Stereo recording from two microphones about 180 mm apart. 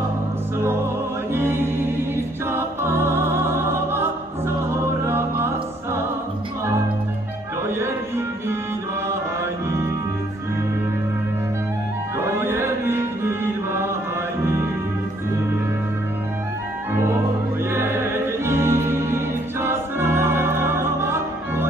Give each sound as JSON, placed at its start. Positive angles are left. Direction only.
{"t": 0.6, "sound": "music", "side_deg": -15}
{"t": 9.1, "sound": "music", "side_deg": -15}
{"t": 12.2, "sound": "music", "side_deg": -15}
{"t": 16.9, "sound": "music", "side_deg": -15}